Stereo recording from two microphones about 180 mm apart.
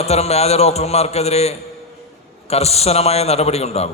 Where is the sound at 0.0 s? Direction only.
35° left (ahead or behind).